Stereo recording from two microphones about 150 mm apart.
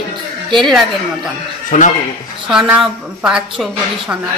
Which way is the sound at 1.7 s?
60° left (ahead or behind).